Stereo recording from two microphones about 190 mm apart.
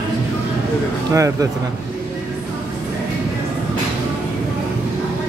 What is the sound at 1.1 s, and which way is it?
Speech, 15° right (ahead or behind).